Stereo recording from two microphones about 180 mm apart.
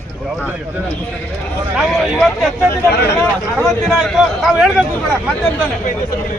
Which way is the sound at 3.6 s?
Centre (ahead or behind).